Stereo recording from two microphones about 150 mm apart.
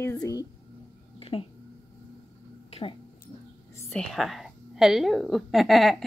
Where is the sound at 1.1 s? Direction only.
40° left (ahead or behind).